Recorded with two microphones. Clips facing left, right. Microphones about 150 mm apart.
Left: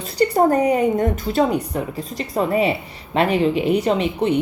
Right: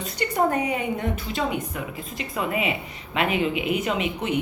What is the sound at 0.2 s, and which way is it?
A woman's voice, 35° left (ahead or behind).